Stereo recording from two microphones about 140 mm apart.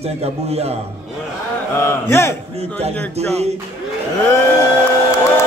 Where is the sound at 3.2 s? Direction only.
50° right (ahead or behind).